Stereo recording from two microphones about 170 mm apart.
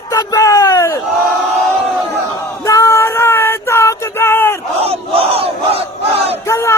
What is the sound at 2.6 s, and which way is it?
Female singing, 20° left (ahead or behind).